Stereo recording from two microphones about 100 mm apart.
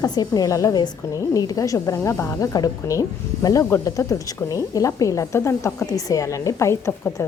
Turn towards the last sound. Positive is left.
turn(degrees=25)  # may be behind; listen again after turning